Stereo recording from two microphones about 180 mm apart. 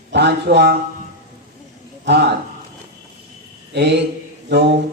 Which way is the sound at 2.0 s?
70° right (ahead or behind).